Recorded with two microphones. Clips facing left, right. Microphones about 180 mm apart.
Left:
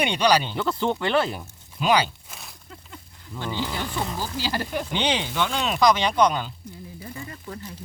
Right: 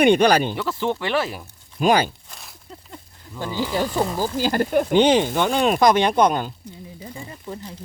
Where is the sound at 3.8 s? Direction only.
45° right (ahead or behind).